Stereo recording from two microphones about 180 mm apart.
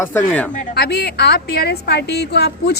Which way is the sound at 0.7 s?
65° left (ahead or behind).